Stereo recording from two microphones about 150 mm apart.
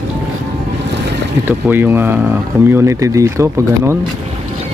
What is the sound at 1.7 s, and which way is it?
Speech, 15° right (ahead or behind).